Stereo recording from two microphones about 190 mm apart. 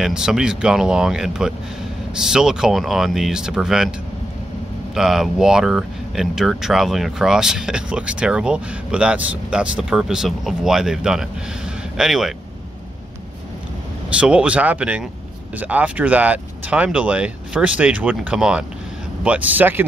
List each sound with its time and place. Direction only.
0.0 s speech: 5° right (ahead or behind)
4.9 s speech: centre (ahead or behind)
14.2 s speech: 5° right (ahead or behind)